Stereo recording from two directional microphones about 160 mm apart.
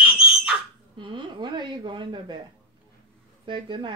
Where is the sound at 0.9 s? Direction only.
30° right (ahead or behind).